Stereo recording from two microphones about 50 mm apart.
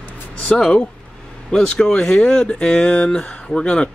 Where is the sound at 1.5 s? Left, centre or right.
Centre.